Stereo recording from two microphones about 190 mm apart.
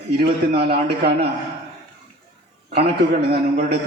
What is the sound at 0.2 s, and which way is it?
A man's voice, 60° right (ahead or behind).